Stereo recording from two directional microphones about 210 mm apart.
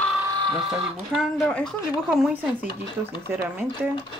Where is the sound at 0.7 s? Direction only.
Centre (ahead or behind).